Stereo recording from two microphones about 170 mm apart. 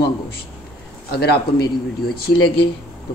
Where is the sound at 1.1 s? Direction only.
70° left (ahead or behind).